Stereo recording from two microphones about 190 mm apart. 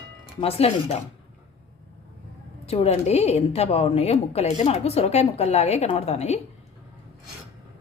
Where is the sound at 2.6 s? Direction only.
35° left (ahead or behind).